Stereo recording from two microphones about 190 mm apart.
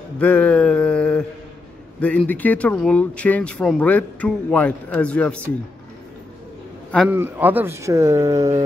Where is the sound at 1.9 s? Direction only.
10° left (ahead or behind).